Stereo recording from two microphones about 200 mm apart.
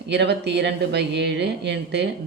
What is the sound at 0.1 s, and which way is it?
Speech, 60° right (ahead or behind).